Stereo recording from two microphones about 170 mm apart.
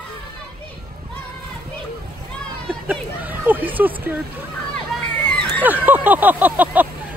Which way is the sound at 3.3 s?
10° right (ahead or behind).